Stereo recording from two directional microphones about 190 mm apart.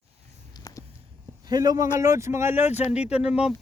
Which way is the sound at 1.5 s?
20° right (ahead or behind).